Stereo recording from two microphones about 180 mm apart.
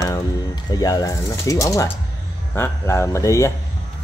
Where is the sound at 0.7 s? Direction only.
20° left (ahead or behind).